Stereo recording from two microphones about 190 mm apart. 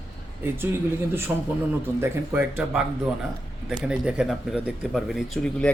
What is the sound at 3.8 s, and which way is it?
Speech, 5° right (ahead or behind).